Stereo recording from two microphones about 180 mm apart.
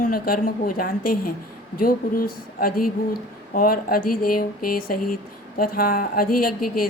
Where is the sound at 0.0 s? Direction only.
55° left (ahead or behind).